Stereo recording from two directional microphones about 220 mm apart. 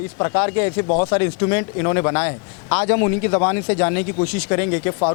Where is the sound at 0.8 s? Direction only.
30° left (ahead or behind).